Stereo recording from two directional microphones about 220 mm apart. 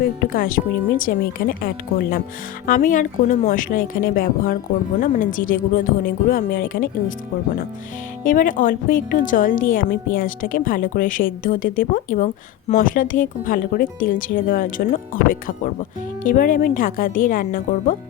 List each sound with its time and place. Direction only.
0.0 s speech: 40° left (ahead or behind)
8.2 s speech: 35° left (ahead or behind)